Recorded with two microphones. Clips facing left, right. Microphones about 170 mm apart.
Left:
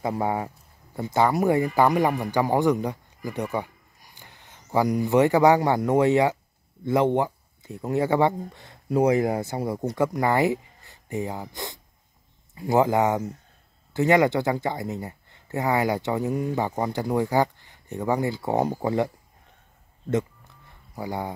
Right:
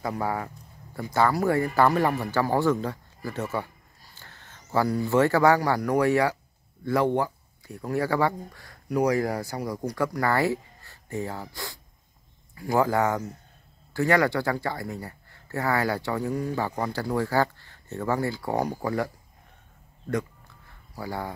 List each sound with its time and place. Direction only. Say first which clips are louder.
0.0 s speech: left 3 dB; 20° left (ahead or behind)
20.9 s speech: left 2 dB; 20° left (ahead or behind)